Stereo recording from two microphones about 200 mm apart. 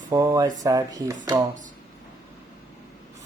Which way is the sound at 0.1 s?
15° right (ahead or behind).